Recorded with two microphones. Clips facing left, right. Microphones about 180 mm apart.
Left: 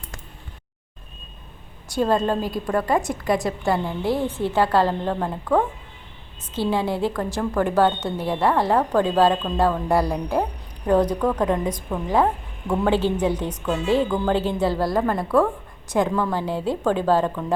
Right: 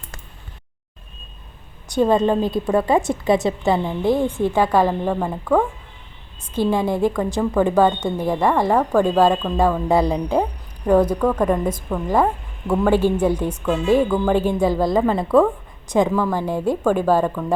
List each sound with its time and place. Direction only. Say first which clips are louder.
1.9 s a woman's voice: right 4 dB; 20° right (ahead or behind)
6.5 s a woman's voice: right 3 dB; 15° right (ahead or behind)
16.0 s a woman's voice: right 3 dB; 5° right (ahead or behind)
16.4 s a woman's voice: right 3 dB; 15° right (ahead or behind)